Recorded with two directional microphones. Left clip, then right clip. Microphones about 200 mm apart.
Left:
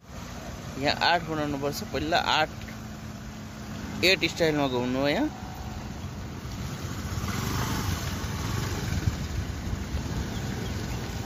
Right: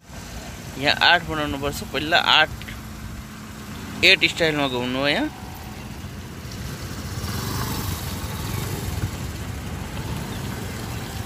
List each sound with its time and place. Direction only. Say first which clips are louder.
0.7 s speech: right 7 dB; 5° left (ahead or behind)
4.0 s speech: right 7 dB; 10° left (ahead or behind)